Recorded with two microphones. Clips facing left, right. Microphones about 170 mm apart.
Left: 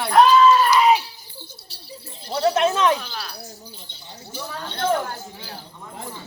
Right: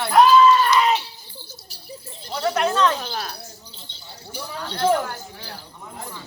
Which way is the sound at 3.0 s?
45° right (ahead or behind).